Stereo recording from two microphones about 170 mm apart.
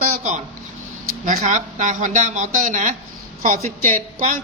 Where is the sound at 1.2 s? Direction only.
50° right (ahead or behind).